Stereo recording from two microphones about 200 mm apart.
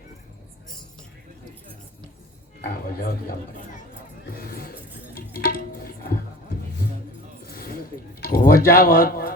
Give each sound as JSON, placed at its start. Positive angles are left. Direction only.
{"t": 4.4, "sound": "music", "side_deg": 45}
{"t": 7.4, "sound": "a sound", "side_deg": 50}
{"t": 8.2, "sound": "speech", "side_deg": 45}